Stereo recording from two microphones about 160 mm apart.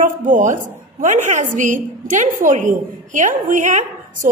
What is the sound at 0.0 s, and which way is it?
A woman's voice, 55° right (ahead or behind).